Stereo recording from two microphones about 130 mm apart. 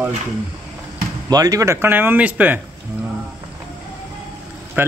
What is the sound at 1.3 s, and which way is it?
Speech, 30° right (ahead or behind).